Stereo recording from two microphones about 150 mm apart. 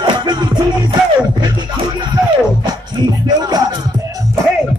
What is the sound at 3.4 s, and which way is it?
Music, 25° right (ahead or behind).